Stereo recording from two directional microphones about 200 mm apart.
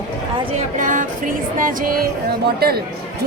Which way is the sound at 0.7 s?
40° right (ahead or behind).